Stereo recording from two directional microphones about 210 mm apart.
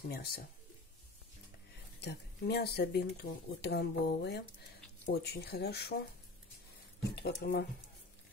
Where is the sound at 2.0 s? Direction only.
50° left (ahead or behind).